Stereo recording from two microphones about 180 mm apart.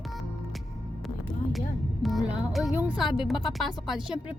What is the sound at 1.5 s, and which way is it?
A woman's voice, centre (ahead or behind).